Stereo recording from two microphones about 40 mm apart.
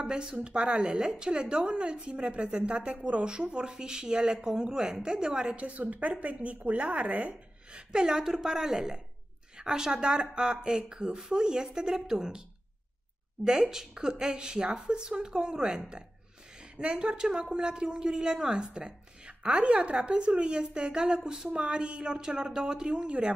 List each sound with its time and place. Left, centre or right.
0.0 s speech: right
5.6 s a woman's voice: right